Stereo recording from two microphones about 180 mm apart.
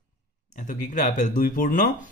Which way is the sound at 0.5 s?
45° left (ahead or behind).